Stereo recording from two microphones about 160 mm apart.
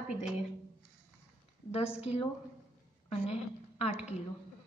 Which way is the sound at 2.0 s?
40° left (ahead or behind).